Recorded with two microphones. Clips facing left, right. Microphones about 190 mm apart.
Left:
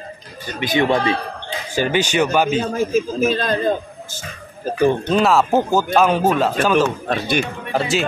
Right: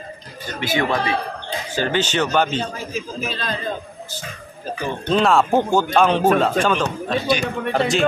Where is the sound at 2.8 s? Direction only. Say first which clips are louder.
Left 10 dB; 45° left (ahead or behind).